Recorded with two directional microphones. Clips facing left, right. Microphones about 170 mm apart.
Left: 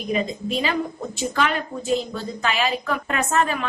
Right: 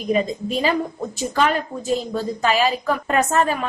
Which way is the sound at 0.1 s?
40° right (ahead or behind).